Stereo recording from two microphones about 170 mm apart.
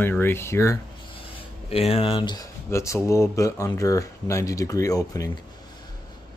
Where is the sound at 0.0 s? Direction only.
15° left (ahead or behind).